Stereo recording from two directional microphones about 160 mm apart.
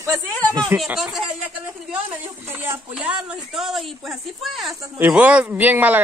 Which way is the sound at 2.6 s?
10° right (ahead or behind).